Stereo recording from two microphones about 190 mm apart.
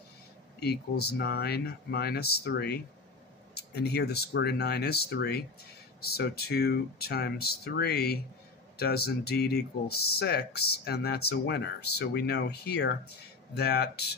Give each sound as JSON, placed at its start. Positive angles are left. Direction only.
{"t": 0.6, "sound": "speech", "side_deg": 55}